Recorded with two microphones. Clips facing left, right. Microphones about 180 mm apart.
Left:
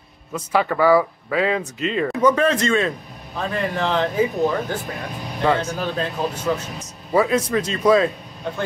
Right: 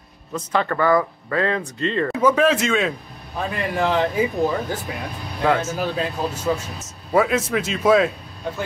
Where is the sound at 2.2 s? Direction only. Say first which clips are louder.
Even; 5° right (ahead or behind).